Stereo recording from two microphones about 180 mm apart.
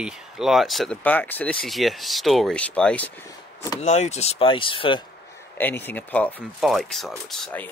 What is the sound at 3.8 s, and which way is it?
Speech, 40° left (ahead or behind).